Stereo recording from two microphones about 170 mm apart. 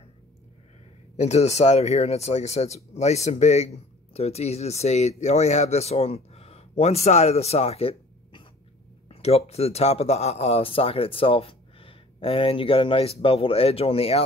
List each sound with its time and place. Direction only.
1.1 s speech: 40° left (ahead or behind)